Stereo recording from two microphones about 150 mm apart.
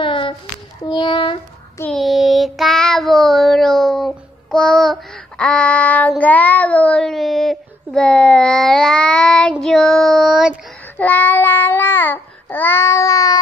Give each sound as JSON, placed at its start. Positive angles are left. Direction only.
{"t": 0.0, "sound": "child singing", "side_deg": 35}
{"t": 1.9, "sound": "child singing", "side_deg": 0}
{"t": 11.0, "sound": "babbling", "side_deg": 10}